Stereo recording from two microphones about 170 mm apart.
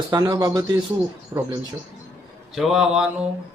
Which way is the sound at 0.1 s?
20° right (ahead or behind).